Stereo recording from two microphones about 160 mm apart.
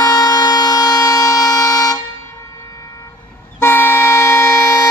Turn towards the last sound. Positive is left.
turn(degrees=20)  # may be behind; listen again after turning